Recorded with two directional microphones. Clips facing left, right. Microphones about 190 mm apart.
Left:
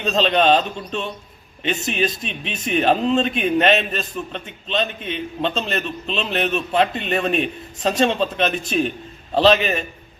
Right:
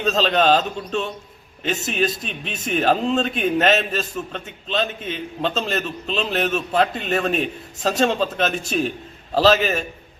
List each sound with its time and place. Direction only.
0.0 s a man's voice: centre (ahead or behind)